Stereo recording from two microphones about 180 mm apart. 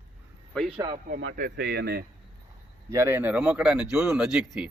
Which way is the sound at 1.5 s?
70° right (ahead or behind).